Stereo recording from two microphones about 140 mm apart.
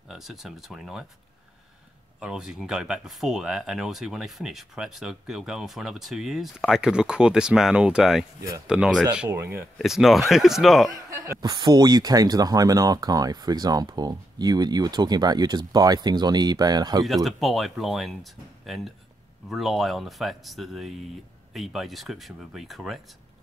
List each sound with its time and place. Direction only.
0.1 s speech: centre (ahead or behind)
2.1 s speech: 5° right (ahead or behind)
9.8 s speech: centre (ahead or behind)
11.1 s speech: 25° right (ahead or behind)
17.0 s speech: centre (ahead or behind)